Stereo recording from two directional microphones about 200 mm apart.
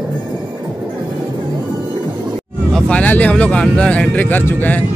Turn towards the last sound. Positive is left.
turn(degrees=10)  # may be behind; listen again after turning